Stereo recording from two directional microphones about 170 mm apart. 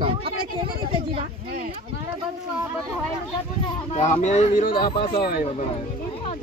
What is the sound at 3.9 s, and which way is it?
Speech, 45° left (ahead or behind).